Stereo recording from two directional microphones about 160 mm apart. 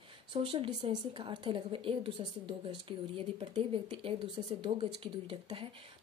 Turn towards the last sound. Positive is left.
turn(degrees=-35)  # may be behind; listen again after turning